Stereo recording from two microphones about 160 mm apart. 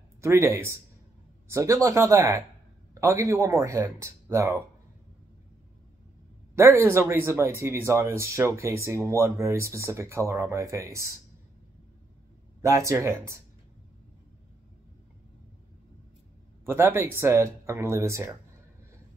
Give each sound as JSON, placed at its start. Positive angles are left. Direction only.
{"t": 0.2, "sound": "speech", "side_deg": -15}
{"t": 6.5, "sound": "speech", "side_deg": -15}
{"t": 12.6, "sound": "speech", "side_deg": -20}
{"t": 16.6, "sound": "speech", "side_deg": -15}